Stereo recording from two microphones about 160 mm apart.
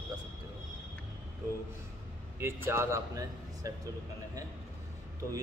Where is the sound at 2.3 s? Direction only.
15° right (ahead or behind).